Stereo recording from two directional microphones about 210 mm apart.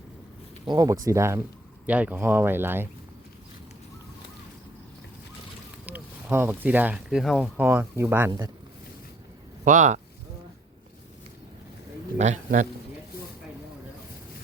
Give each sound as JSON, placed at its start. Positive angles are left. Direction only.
{"t": 0.6, "sound": "speech", "side_deg": -20}
{"t": 5.8, "sound": "speech", "side_deg": -5}
{"t": 9.6, "sound": "speech", "side_deg": -35}
{"t": 12.1, "sound": "a man's voice", "side_deg": -35}